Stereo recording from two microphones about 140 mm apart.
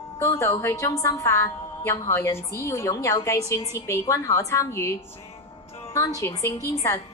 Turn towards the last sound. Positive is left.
turn(degrees=25)  # may be behind; listen again after turning